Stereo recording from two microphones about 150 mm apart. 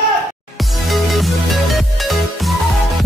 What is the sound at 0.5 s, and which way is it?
Music, centre (ahead or behind).